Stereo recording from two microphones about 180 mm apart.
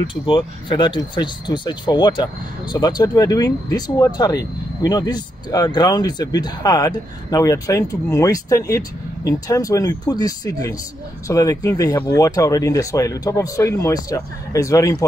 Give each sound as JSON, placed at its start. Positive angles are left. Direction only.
{"t": 0.0, "sound": "speech", "side_deg": 30}